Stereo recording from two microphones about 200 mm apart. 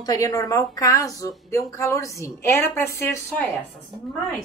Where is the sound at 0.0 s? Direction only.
20° left (ahead or behind).